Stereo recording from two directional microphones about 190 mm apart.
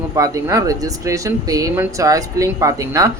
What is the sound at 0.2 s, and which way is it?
Speech, 15° right (ahead or behind).